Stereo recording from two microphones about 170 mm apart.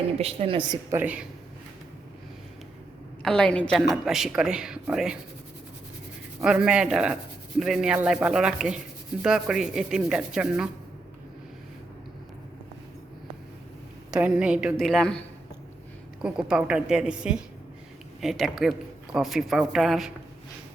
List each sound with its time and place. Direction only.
0.2 s a woman's voice: 35° right (ahead or behind)
0.9 s a woman's voice: 10° right (ahead or behind)
3.2 s speech: 5° left (ahead or behind)
6.4 s speech: 5° right (ahead or behind)
14.1 s speech: 5° right (ahead or behind)
16.2 s speech: 5° right (ahead or behind)